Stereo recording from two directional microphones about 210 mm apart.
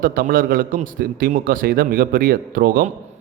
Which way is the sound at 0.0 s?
45° right (ahead or behind).